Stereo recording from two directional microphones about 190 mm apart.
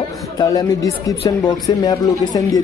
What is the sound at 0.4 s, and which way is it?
A man's voice, 20° left (ahead or behind).